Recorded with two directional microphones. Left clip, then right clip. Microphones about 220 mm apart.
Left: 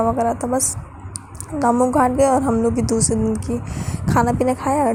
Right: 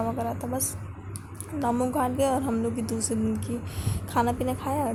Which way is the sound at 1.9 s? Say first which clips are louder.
Left 10 dB; 25° left (ahead or behind).